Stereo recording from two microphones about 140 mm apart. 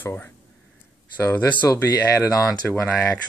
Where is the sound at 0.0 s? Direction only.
15° left (ahead or behind).